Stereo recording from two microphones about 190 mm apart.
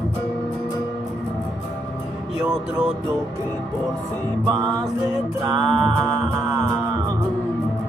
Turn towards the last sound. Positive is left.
turn(degrees=-25)  # may be behind; listen again after turning